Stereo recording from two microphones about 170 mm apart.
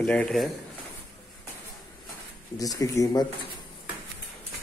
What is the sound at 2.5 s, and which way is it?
Speech, 20° left (ahead or behind).